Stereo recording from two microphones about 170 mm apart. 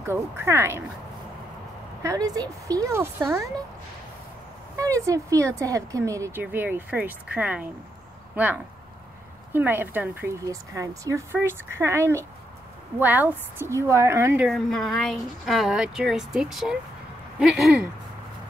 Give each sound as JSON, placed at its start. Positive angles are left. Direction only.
{"t": 0.0, "sound": "speech", "side_deg": -15}
{"t": 2.0, "sound": "speech", "side_deg": -20}
{"t": 4.7, "sound": "speech", "side_deg": -20}
{"t": 9.5, "sound": "speech", "side_deg": -10}
{"t": 14.5, "sound": "speech", "side_deg": 0}